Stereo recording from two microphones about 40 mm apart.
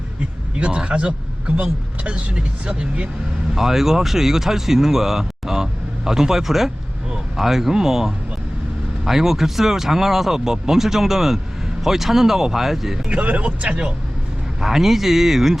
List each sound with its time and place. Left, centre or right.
0.5 s a man's voice: right
3.5 s speech: centre
13.1 s speech: right
14.6 s speech: centre